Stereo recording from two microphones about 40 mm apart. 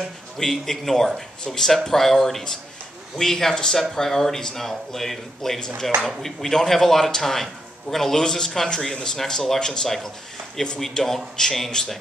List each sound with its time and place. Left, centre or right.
0.4 s speech: centre